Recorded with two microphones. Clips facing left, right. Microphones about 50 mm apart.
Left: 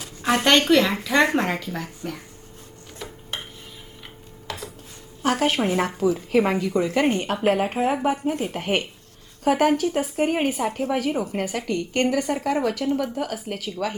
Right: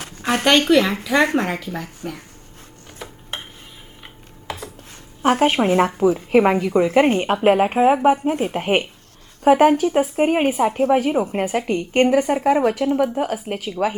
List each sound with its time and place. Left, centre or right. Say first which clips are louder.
0.2 s a sound: even; right
0.7 s speech: right 2 dB; centre
3.0 s dishes: right 1 dB; centre
4.5 s dishes: right 3 dB; centre
5.2 s a woman's voice: right 5 dB; right